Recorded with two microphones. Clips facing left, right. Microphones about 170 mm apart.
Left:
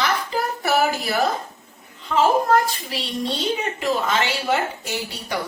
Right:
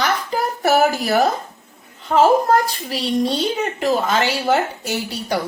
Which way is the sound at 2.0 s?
40° right (ahead or behind).